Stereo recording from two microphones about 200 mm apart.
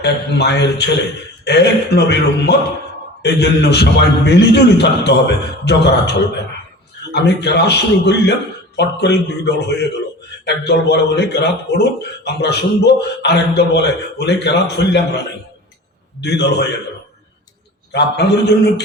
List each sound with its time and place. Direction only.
0.0 s a man's voice: 55° left (ahead or behind)
16.2 s a man's voice: 60° left (ahead or behind)
17.9 s a man's voice: 55° left (ahead or behind)